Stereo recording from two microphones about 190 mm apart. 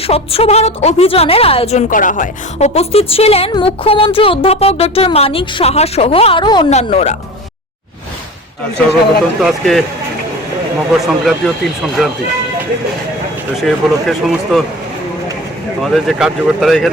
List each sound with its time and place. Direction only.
0.0 s a woman's voice: 30° left (ahead or behind)
6.7 s a woman's voice: 35° left (ahead or behind)
9.4 s speech: centre (ahead or behind)
11.0 s speech: centre (ahead or behind)
13.6 s speech: centre (ahead or behind)
15.8 s speech: centre (ahead or behind)